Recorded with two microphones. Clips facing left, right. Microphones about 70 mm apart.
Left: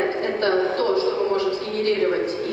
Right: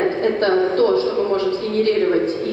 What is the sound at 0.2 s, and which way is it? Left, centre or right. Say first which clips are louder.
A woman's voice: right 5 dB; right.